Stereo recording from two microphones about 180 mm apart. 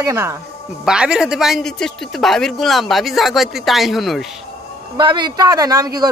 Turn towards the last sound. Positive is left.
turn(degrees=-20)  # may be behind; listen again after turning